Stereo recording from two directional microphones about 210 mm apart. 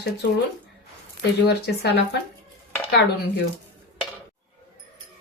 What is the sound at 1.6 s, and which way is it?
Speech, 50° left (ahead or behind).